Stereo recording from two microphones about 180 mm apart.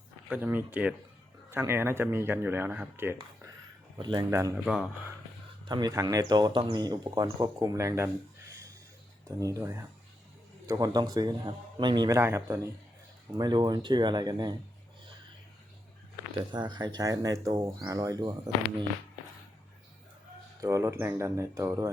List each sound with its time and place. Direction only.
0.3 s speech: 10° right (ahead or behind)
3.9 s speech: 25° right (ahead or behind)
4.5 s speech: centre (ahead or behind)
5.6 s speech: 25° right (ahead or behind)
16.4 s speech: 25° right (ahead or behind)
20.6 s speech: 20° right (ahead or behind)